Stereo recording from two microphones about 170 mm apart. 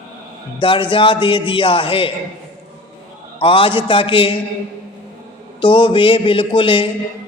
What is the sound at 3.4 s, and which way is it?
Speech, 30° left (ahead or behind).